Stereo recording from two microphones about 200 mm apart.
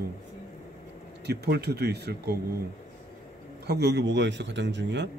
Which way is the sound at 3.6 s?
55° right (ahead or behind).